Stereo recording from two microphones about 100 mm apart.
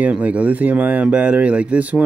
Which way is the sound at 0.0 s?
15° right (ahead or behind).